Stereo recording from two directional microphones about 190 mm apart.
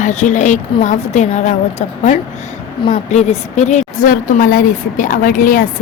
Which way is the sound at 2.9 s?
35° left (ahead or behind).